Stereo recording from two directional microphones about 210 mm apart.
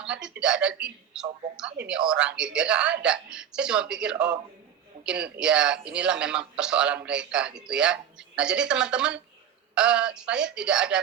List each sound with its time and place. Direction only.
0.0 s speech: 5° right (ahead or behind)